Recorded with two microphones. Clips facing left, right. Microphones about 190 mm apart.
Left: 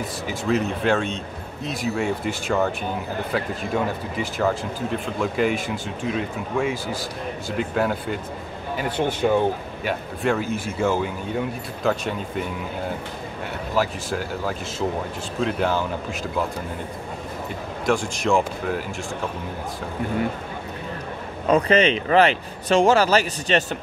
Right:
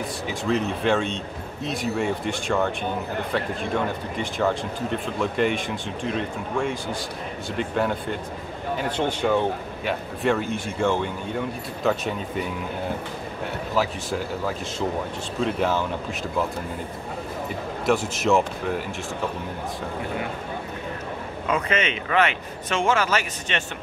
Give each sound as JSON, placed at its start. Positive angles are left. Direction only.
{"t": 0.3, "sound": "speech", "side_deg": 0}
{"t": 9.8, "sound": "speech", "side_deg": 0}
{"t": 13.7, "sound": "speech", "side_deg": 0}
{"t": 17.8, "sound": "speech", "side_deg": -5}
{"t": 21.5, "sound": "speech", "side_deg": 35}